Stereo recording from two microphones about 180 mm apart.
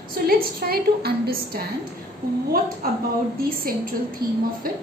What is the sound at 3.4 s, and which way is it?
Speech, 55° right (ahead or behind).